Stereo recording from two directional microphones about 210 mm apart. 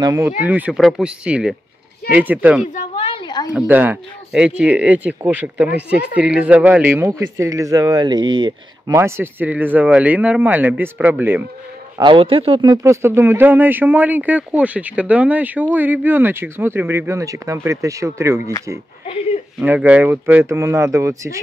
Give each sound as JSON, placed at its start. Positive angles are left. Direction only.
{"t": 0.0, "sound": "speech", "side_deg": -15}
{"t": 2.7, "sound": "a sound", "side_deg": 30}
{"t": 3.5, "sound": "speech", "side_deg": -10}
{"t": 12.0, "sound": "speech", "side_deg": -25}
{"t": 19.6, "sound": "speech", "side_deg": -10}